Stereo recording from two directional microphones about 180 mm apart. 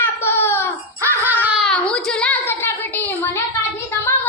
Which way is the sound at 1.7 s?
5° left (ahead or behind).